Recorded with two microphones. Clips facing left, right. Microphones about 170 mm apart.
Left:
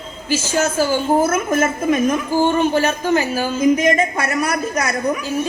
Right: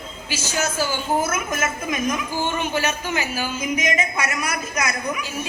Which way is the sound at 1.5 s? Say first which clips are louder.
Left 8 dB; 30° left (ahead or behind).